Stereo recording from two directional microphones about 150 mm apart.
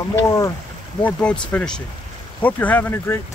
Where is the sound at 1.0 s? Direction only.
10° left (ahead or behind).